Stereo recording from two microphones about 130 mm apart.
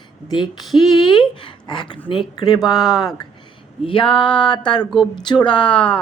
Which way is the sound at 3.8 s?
40° left (ahead or behind).